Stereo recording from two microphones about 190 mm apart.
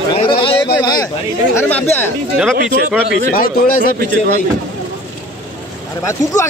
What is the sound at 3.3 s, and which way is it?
Speech, 50° left (ahead or behind).